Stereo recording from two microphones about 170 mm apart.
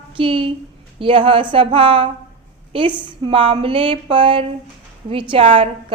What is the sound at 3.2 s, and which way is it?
A woman's voice, 30° right (ahead or behind).